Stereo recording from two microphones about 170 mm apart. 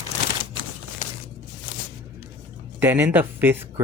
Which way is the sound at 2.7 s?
10° right (ahead or behind).